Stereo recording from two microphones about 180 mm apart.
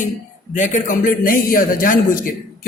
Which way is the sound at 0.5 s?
45° left (ahead or behind).